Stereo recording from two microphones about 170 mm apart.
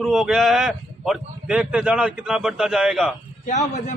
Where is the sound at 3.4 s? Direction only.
45° left (ahead or behind).